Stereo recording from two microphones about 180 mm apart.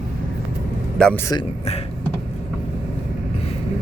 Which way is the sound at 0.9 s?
5° left (ahead or behind).